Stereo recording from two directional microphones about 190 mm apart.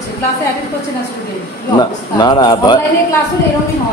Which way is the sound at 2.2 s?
20° left (ahead or behind).